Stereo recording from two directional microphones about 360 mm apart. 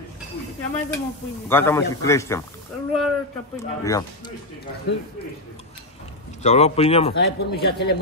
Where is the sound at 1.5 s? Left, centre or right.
Centre.